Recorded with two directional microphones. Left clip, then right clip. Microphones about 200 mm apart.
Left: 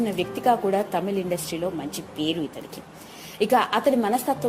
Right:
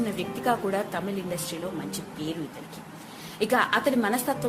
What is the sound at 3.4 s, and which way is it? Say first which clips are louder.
Speech: left 3 dB; 20° left (ahead or behind).